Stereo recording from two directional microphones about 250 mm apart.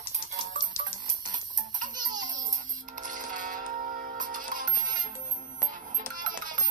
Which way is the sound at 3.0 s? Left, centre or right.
Right.